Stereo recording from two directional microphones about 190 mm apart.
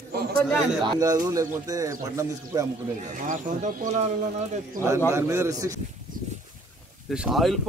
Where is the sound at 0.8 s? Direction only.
20° right (ahead or behind).